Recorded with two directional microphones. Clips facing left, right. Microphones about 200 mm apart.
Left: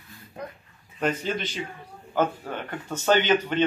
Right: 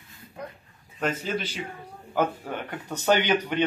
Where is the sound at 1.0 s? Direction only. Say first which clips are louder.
Left 1 dB; 5° right (ahead or behind).